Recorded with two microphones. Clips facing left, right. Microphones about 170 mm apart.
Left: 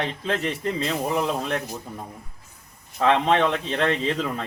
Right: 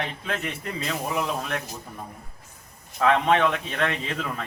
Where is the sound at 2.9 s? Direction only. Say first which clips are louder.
Left 1 dB; 25° left (ahead or behind).